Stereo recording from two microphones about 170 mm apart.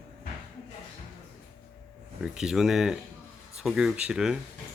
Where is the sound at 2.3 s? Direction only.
5° right (ahead or behind).